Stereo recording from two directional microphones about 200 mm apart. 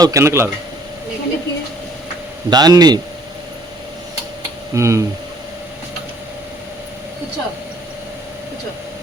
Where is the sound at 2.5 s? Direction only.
20° right (ahead or behind).